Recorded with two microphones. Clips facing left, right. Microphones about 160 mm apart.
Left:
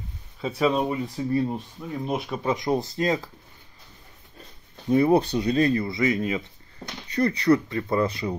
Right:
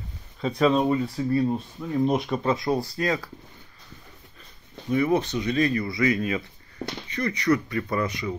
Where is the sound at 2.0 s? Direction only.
5° left (ahead or behind); by 3.3 s 20° left (ahead or behind).